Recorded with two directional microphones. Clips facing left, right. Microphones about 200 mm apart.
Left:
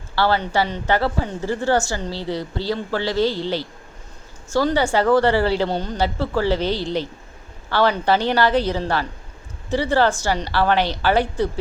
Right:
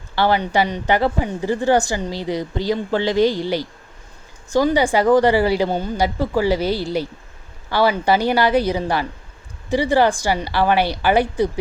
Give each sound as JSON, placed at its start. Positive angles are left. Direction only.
{"t": 0.2, "sound": "a woman's voice", "side_deg": -15}